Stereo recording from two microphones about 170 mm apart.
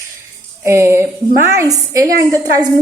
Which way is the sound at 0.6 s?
15° right (ahead or behind).